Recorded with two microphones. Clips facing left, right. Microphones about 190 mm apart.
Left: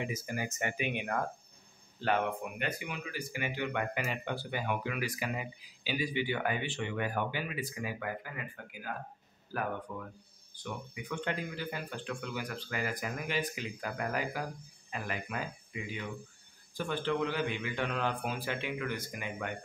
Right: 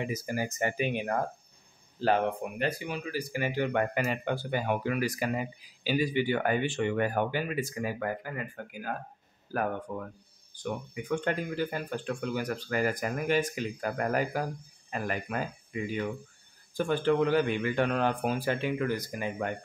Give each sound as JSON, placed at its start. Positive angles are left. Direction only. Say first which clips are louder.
{"t": 0.1, "sound": "speech", "louder": "right 5 dB", "side_deg": -35}